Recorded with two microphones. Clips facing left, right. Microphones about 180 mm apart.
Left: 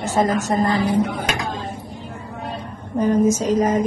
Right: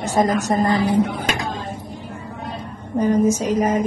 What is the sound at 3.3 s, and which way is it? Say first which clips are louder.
Speech: left 1 dB; 10° right (ahead or behind).